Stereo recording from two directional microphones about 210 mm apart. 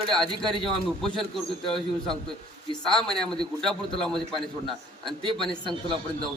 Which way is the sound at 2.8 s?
5° left (ahead or behind).